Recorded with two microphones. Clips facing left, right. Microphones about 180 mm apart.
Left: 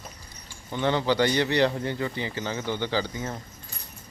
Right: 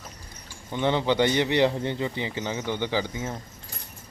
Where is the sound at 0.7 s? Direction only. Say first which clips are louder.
Right 1 dB; 20° right (ahead or behind).